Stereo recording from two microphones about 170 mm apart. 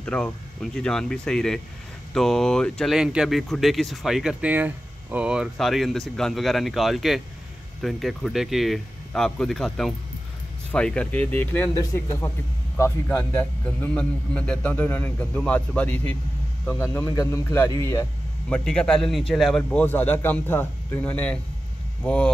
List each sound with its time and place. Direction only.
0.0 s a man's voice: 5° left (ahead or behind)
18.5 s a man's voice: 5° left (ahead or behind)